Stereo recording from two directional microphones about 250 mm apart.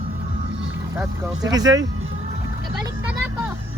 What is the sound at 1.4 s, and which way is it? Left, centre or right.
Speech, centre.